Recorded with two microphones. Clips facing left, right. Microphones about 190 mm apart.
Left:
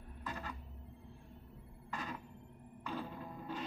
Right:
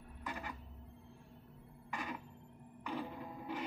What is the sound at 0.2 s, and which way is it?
Music, 15° right (ahead or behind).